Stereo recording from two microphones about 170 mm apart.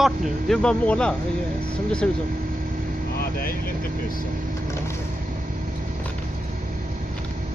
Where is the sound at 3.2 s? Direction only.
65° left (ahead or behind).